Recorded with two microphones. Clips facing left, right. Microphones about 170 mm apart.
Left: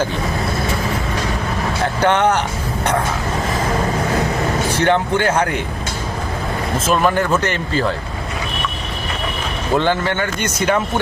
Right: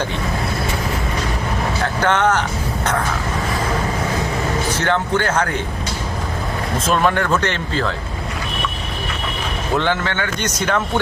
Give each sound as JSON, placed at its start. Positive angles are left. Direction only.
{"t": 2.0, "sound": "speech", "side_deg": 15}
{"t": 4.8, "sound": "speech", "side_deg": 15}
{"t": 6.8, "sound": "speech", "side_deg": 5}
{"t": 9.7, "sound": "speech", "side_deg": 10}